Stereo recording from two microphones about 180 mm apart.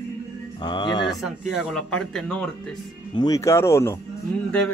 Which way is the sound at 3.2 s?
20° left (ahead or behind).